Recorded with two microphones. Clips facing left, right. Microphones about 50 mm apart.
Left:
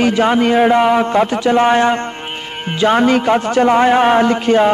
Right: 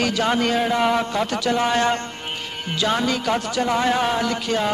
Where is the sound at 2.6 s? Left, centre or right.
Left.